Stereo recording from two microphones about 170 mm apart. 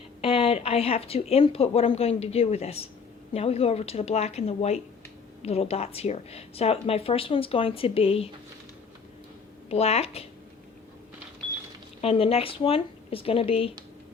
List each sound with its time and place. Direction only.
0.2 s a woman's voice: 35° left (ahead or behind)
9.6 s a woman's voice: 40° left (ahead or behind)
12.0 s a woman's voice: 35° left (ahead or behind)